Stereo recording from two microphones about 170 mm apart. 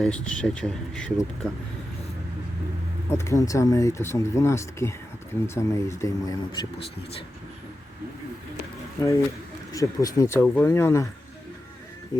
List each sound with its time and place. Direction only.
0.0 s speech: 5° left (ahead or behind)
3.1 s speech: 15° left (ahead or behind)
9.0 s speech: 20° left (ahead or behind)